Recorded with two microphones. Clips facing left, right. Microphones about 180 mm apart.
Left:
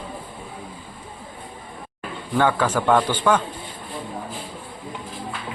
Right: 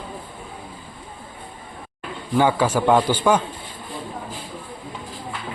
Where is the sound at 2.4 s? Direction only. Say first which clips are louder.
Right 2 dB; 10° right (ahead or behind).